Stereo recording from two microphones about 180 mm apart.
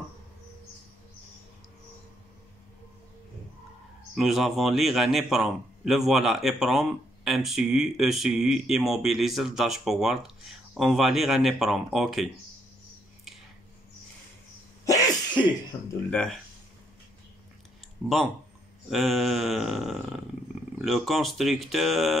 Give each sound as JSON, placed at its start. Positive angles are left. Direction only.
{"t": 4.1, "sound": "a man's voice", "side_deg": 0}
{"t": 14.9, "sound": "cough", "side_deg": 25}
{"t": 16.1, "sound": "a man's voice", "side_deg": 5}
{"t": 18.0, "sound": "a man's voice", "side_deg": 0}